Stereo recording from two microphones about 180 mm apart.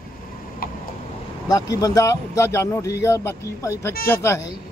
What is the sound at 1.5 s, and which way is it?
Speech, 20° left (ahead or behind).